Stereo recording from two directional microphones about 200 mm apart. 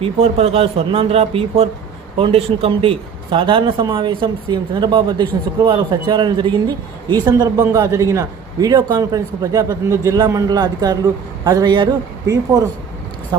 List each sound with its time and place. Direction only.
0.0 s speech: 30° right (ahead or behind)